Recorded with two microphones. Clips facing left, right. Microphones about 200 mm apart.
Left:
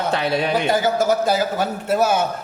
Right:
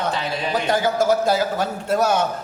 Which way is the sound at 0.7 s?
5° left (ahead or behind).